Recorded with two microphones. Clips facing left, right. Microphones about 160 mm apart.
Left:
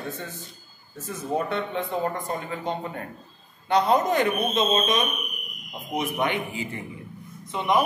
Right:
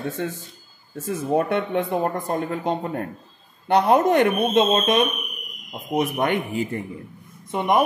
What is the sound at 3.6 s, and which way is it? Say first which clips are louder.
Speech: right 4 dB; 60° right (ahead or behind).